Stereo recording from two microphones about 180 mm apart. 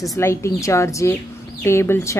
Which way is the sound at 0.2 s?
15° left (ahead or behind).